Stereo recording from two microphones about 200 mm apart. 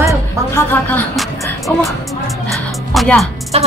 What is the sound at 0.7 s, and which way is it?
Speech, 10° left (ahead or behind).